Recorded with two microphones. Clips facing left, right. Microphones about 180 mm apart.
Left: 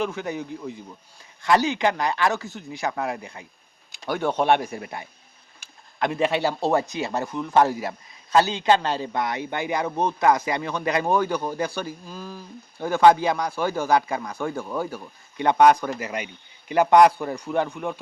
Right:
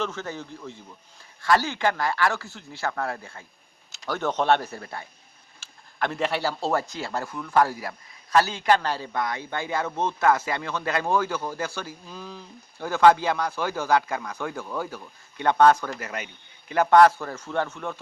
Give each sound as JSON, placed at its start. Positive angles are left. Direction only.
{"t": 0.0, "sound": "speech", "side_deg": 15}